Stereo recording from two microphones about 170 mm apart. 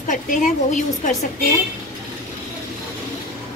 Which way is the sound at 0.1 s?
45° left (ahead or behind).